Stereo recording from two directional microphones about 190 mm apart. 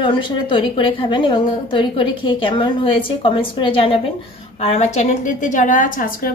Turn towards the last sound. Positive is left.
turn(degrees=50)  # may be behind; listen again after turning